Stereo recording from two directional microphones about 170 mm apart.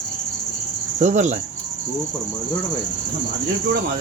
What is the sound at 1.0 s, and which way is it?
Speech, 45° right (ahead or behind).